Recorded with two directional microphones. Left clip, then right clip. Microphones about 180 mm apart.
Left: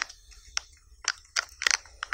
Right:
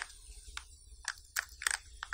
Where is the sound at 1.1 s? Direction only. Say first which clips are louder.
Left 8 dB; 20° left (ahead or behind).